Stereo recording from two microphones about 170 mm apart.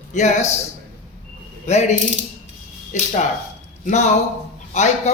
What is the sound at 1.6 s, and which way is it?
A man's voice, 40° left (ahead or behind).